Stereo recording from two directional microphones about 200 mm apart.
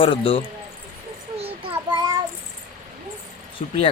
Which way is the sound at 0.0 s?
25° left (ahead or behind).